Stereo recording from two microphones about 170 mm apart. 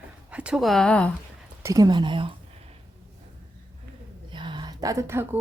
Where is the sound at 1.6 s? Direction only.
20° right (ahead or behind).